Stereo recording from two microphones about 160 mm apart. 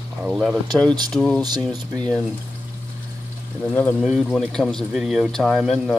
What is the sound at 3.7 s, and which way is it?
Speech, 10° left (ahead or behind).